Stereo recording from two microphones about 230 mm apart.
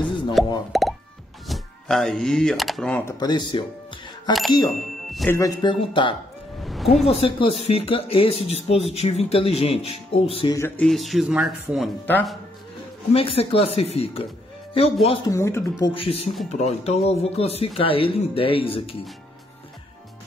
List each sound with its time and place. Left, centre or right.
0.4 s plop: centre
1.5 s speech: centre
3.2 s speech: centre
4.6 s speech: centre
5.4 s speech: centre
6.6 s a sound: centre
7.1 s speech: left
10.6 s speech: centre
13.1 s speech: left
15.3 s speech: centre
15.8 s speech: left